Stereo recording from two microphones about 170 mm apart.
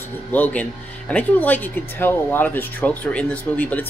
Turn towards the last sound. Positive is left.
turn(degrees=10)  # may be behind; listen again after turning